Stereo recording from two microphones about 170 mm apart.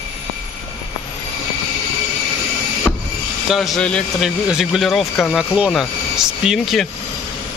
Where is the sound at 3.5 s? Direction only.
Centre (ahead or behind).